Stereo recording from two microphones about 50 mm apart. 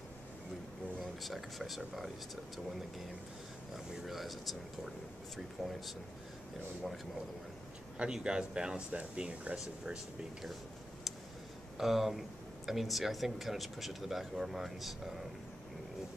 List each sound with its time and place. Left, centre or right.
0.9 s speech: centre
3.7 s speech: centre
8.0 s speech: centre
11.8 s speech: centre